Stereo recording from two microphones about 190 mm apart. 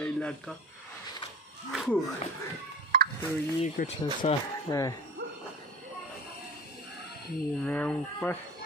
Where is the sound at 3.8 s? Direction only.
50° left (ahead or behind).